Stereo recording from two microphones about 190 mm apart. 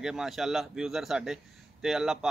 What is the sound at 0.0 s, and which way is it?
A man's voice, 5° right (ahead or behind).